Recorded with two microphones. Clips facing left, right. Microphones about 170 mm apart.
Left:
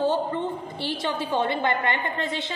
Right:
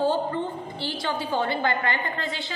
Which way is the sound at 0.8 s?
25° left (ahead or behind).